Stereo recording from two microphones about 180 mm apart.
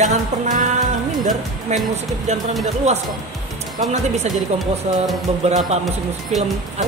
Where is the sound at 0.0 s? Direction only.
45° right (ahead or behind).